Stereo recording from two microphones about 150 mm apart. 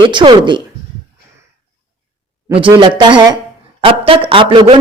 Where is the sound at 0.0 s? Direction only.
30° right (ahead or behind).